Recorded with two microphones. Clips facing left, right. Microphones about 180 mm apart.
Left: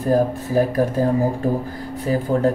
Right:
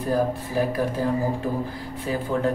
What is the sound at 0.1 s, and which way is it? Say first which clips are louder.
Speech: left 6 dB; 45° left (ahead or behind).